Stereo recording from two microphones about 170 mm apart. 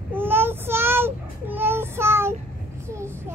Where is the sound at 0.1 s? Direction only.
10° right (ahead or behind).